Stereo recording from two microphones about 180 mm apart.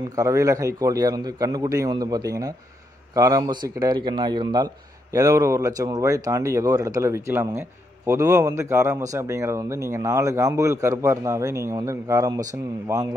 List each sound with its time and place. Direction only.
0.1 s a man's voice: 20° right (ahead or behind)